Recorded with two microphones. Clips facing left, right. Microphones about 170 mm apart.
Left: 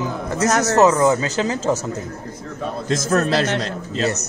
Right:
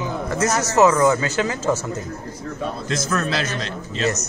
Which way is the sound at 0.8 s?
20° left (ahead or behind).